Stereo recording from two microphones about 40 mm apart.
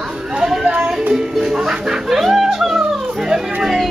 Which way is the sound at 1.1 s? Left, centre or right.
Centre.